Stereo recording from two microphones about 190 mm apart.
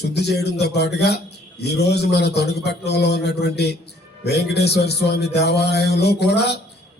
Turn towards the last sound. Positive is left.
turn(degrees=60)  # may be behind; listen again after turning